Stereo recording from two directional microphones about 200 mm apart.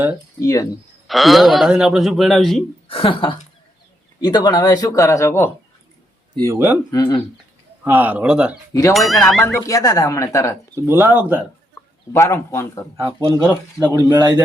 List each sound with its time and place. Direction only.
0.4 s speech: 20° left (ahead or behind)
1.0 s speech: centre (ahead or behind)
2.9 s speech: 25° left (ahead or behind)
6.3 s speech: 15° right (ahead or behind)
6.9 s speech: 20° left (ahead or behind)
7.9 s speech: 10° right (ahead or behind); by 10.6 s 15° left (ahead or behind)
10.8 s speech: 15° right (ahead or behind)
11.7 s speech: 15° left (ahead or behind)
13.0 s speech: 20° right (ahead or behind)
13.4 s speech: 10° left (ahead or behind)
13.9 s speech: 20° right (ahead or behind)